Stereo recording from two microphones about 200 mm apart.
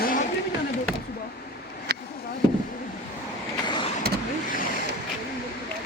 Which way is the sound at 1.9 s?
55° right (ahead or behind).